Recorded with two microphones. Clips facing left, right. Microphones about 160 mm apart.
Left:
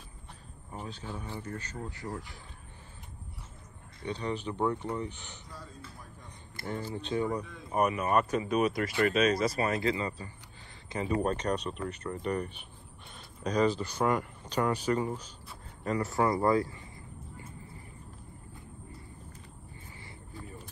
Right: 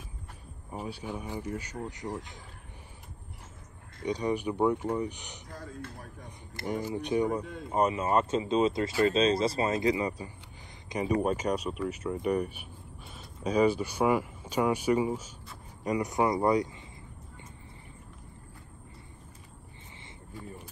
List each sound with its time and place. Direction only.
0.7 s speech: 10° right (ahead or behind)
4.0 s speech: 15° right (ahead or behind)
5.5 s a man's voice: 55° right (ahead or behind)
6.6 s speech: 15° right (ahead or behind)
7.4 s speech: 65° right (ahead or behind)
7.7 s speech: 25° right (ahead or behind)